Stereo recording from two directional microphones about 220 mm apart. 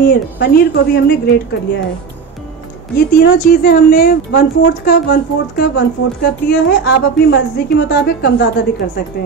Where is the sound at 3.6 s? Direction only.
40° left (ahead or behind).